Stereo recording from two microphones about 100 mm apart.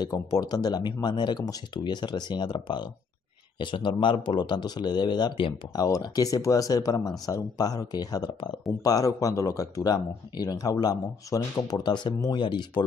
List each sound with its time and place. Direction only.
0.0 s speech: 40° left (ahead or behind)